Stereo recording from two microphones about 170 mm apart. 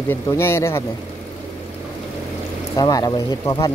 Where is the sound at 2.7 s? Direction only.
20° left (ahead or behind).